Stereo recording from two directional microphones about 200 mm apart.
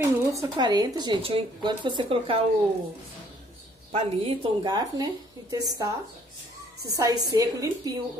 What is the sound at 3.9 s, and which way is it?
Speech, 25° right (ahead or behind).